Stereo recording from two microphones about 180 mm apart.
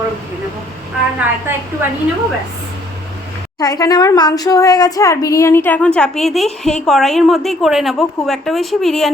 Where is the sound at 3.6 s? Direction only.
20° left (ahead or behind); by 6.5 s centre (ahead or behind).